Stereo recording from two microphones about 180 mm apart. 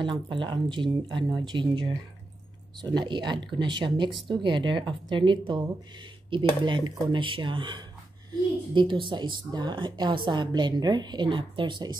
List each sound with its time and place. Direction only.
0.0 s a woman's voice: 25° right (ahead or behind)